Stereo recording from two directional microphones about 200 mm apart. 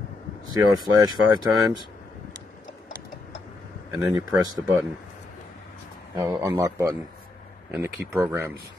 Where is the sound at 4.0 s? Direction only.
20° right (ahead or behind).